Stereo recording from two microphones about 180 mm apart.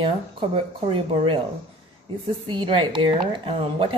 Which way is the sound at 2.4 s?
25° right (ahead or behind).